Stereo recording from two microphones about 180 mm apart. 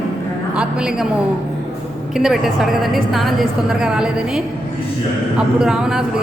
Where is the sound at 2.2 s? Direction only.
Centre (ahead or behind).